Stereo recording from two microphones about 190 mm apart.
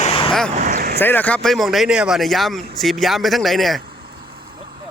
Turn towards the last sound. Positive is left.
turn(degrees=0)  # may be behind; listen again after turning